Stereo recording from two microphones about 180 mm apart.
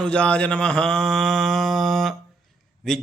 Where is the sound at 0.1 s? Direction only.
5° left (ahead or behind).